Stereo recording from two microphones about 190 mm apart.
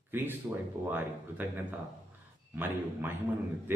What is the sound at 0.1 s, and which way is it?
Speech, 10° right (ahead or behind).